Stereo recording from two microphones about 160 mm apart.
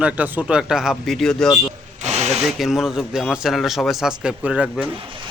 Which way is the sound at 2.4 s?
Centre (ahead or behind).